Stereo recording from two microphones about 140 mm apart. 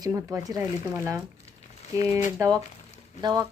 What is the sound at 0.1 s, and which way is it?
Speech, 15° right (ahead or behind).